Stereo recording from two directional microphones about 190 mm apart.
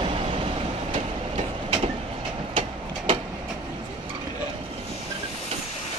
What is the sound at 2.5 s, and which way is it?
Train, 25° right (ahead or behind).